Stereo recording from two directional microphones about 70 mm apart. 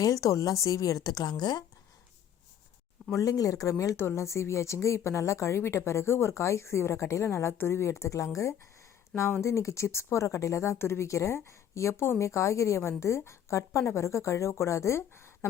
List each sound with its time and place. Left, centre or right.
0.0 s a woman's voice: left
3.1 s speech: left